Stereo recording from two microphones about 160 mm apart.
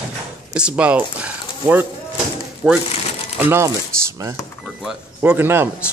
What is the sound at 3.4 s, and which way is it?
Speech, 15° right (ahead or behind).